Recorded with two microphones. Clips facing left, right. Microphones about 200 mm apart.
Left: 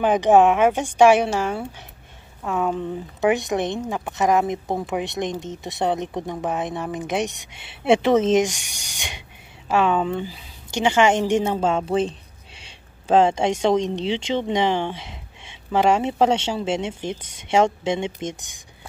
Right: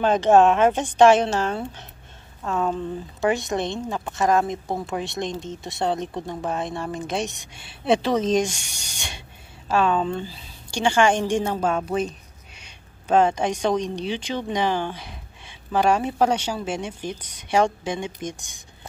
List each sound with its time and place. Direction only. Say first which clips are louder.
0.0 s a woman's voice: left 1 dB; 15° left (ahead or behind)